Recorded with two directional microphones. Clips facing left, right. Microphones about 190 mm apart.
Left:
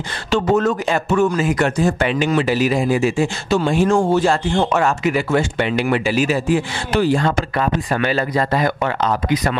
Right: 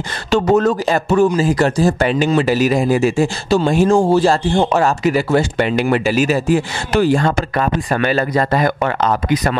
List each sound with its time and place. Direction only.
0.3 s speech: 40° right (ahead or behind)